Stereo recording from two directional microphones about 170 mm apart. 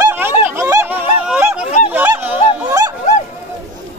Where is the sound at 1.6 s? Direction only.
40° left (ahead or behind).